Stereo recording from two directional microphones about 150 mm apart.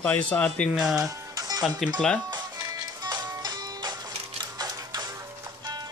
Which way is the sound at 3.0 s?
25° right (ahead or behind).